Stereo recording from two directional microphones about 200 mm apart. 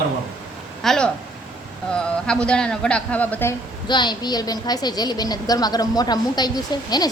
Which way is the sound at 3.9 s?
20° left (ahead or behind).